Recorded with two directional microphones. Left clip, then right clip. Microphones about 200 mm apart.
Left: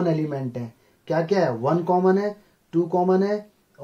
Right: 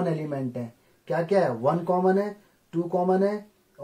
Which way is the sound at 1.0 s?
35° left (ahead or behind).